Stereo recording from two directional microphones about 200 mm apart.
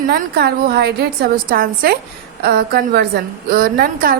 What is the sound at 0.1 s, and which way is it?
A woman's voice, 50° right (ahead or behind).